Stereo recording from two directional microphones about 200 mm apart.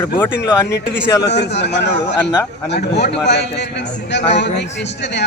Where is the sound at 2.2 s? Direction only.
15° left (ahead or behind).